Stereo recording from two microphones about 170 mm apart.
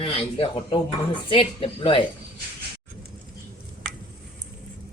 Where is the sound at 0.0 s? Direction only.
35° left (ahead or behind).